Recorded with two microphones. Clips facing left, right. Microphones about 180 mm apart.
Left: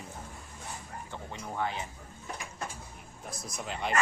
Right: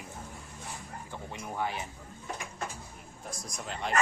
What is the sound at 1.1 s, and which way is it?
Speech, 15° right (ahead or behind).